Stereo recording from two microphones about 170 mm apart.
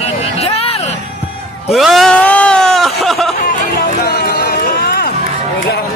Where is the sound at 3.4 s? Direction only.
60° left (ahead or behind).